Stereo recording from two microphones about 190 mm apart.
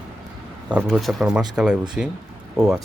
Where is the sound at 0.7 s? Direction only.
5° right (ahead or behind).